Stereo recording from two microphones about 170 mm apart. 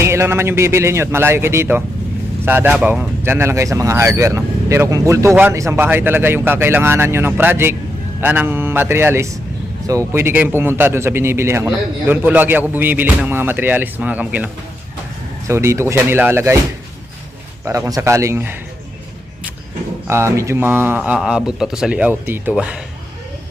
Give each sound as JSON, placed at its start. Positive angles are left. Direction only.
{"t": 0.0, "sound": "a man's voice", "side_deg": -15}
{"t": 17.7, "sound": "a man's voice", "side_deg": -20}
{"t": 20.1, "sound": "a man's voice", "side_deg": -15}